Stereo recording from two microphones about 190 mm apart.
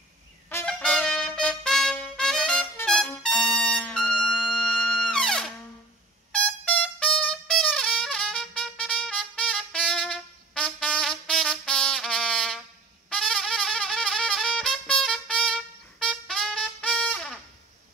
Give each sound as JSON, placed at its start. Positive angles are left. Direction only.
{"t": 0.5, "sound": "trumpet", "side_deg": 10}
{"t": 6.3, "sound": "music", "side_deg": 5}